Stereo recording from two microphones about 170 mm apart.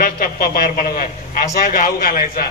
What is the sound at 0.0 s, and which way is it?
A man's voice, 60° left (ahead or behind).